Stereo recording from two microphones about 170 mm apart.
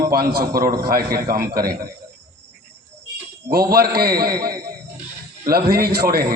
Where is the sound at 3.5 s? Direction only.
65° right (ahead or behind).